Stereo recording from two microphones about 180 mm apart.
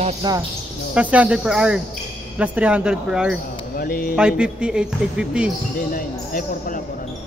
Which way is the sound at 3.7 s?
55° left (ahead or behind).